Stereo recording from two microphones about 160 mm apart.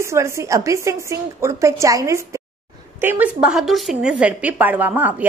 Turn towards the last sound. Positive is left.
turn(degrees=-10)  # may be behind; listen again after turning